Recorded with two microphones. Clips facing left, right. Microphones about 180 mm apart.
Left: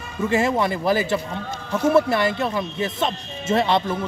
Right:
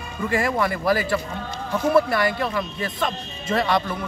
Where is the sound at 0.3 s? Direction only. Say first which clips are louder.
Left 2 dB; 25° left (ahead or behind).